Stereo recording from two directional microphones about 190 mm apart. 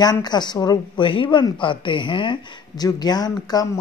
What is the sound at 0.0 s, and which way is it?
Speech, 20° left (ahead or behind).